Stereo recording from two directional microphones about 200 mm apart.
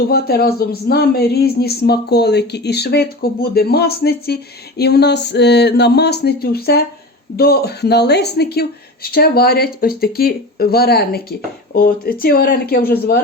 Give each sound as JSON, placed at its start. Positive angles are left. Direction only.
{"t": 0.1, "sound": "speech", "side_deg": 50}